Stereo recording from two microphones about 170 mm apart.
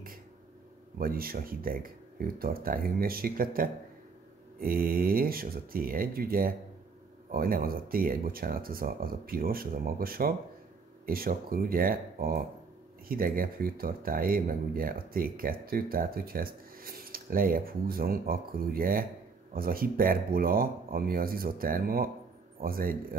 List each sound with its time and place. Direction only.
0.9 s speech: 60° right (ahead or behind)